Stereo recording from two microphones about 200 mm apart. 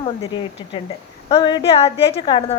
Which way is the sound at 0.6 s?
25° left (ahead or behind).